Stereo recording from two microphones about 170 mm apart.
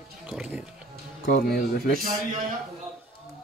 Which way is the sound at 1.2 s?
60° left (ahead or behind).